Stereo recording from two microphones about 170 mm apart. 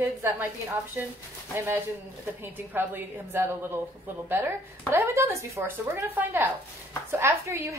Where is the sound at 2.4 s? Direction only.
10° right (ahead or behind).